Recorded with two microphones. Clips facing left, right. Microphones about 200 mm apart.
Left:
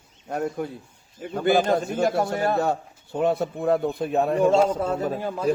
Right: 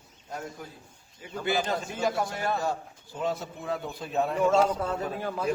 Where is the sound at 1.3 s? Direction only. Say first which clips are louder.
Left 8 dB; 50° left (ahead or behind).